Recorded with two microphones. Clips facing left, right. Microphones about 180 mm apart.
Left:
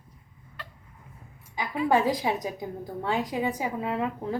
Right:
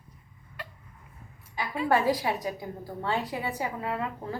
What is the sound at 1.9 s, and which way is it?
A woman's voice, 15° left (ahead or behind).